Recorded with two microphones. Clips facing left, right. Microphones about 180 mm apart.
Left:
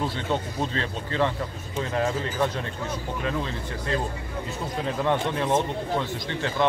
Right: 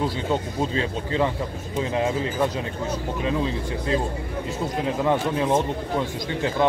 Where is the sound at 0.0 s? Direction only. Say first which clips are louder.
Right 3 dB; 10° right (ahead or behind).